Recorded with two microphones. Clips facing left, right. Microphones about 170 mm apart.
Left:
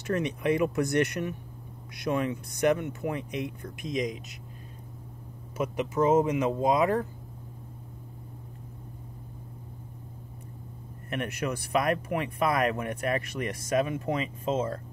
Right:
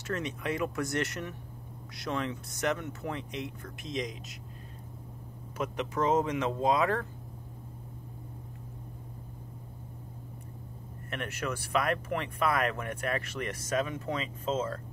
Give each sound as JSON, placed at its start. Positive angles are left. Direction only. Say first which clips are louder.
{"t": 0.0, "sound": "speech", "louder": "left 6 dB", "side_deg": 15}
{"t": 5.6, "sound": "speech", "louder": "left 4 dB", "side_deg": 10}
{"t": 11.1, "sound": "speech", "louder": "left 4 dB", "side_deg": 15}